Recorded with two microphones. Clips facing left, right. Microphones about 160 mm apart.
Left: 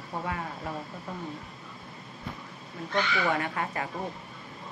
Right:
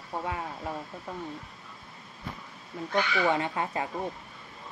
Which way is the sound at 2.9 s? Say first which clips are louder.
Right 2 dB; 20° right (ahead or behind).